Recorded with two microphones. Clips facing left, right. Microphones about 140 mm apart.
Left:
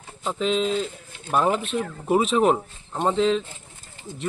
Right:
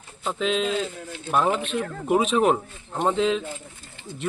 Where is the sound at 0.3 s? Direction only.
Centre (ahead or behind).